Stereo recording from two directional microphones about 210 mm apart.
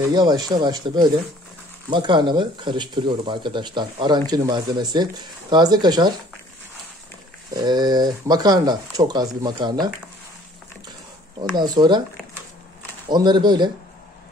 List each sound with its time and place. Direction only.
0.1 s speech: 20° right (ahead or behind)
7.5 s speech: 20° right (ahead or behind)
11.5 s speech: 20° right (ahead or behind)
13.1 s speech: 20° right (ahead or behind)